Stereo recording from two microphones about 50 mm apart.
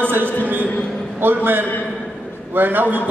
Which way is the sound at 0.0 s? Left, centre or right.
Right.